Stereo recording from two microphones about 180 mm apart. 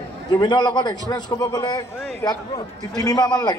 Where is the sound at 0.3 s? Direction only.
25° left (ahead or behind).